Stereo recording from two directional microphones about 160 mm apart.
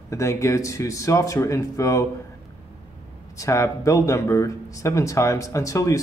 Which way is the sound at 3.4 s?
20° left (ahead or behind).